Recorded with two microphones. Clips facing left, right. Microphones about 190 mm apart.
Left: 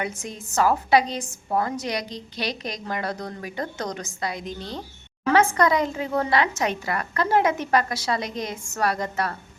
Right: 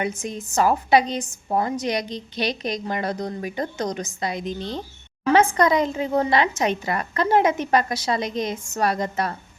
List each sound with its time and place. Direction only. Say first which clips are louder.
0.0 s a woman's voice: right 4 dB; 20° right (ahead or behind)